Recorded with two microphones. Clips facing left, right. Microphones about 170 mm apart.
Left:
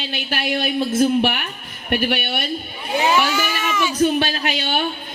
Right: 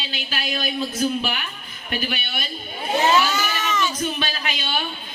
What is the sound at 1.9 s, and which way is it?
Speech, 65° left (ahead or behind).